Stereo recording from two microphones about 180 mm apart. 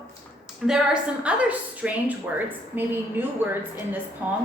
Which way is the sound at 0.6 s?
5° right (ahead or behind).